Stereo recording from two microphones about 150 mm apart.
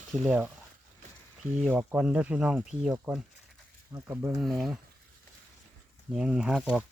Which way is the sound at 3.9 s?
15° right (ahead or behind).